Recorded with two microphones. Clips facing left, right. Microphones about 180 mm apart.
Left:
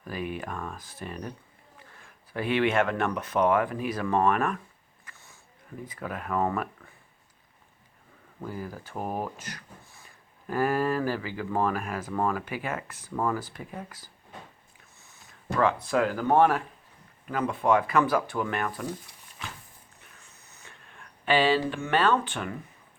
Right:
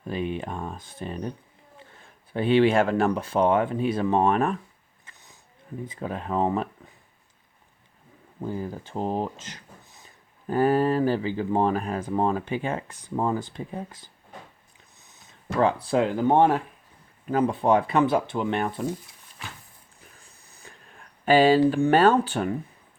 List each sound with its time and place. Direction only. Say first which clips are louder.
0.0 s speech: right 4 dB; 25° right (ahead or behind)
5.0 s a sound: even; 20° right (ahead or behind)
5.9 s speech: right 2 dB; 25° right (ahead or behind)
8.4 s speech: right 5 dB; 25° right (ahead or behind)
10.4 s speech: right 5 dB; 30° right (ahead or behind)
15.0 s a sound: even; 20° right (ahead or behind)
15.5 s speech: right 3 dB; 30° right (ahead or behind)
17.2 s speech: right 4 dB; 35° right (ahead or behind)
20.0 s a sound: right 2 dB; 35° right (ahead or behind)